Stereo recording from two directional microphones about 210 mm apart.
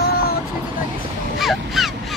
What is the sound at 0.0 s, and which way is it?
Vehicle, 45° left (ahead or behind).